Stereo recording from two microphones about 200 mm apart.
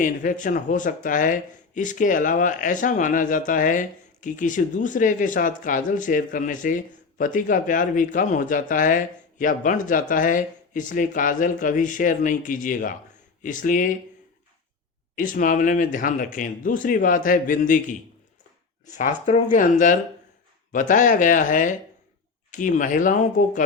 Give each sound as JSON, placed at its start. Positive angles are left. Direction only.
{"t": 0.0, "sound": "speech", "side_deg": 40}
{"t": 15.2, "sound": "speech", "side_deg": 40}